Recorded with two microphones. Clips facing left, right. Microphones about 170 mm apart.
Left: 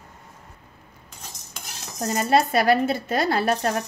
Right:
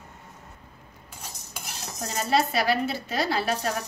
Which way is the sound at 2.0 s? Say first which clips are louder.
Left 4 dB; 50° left (ahead or behind).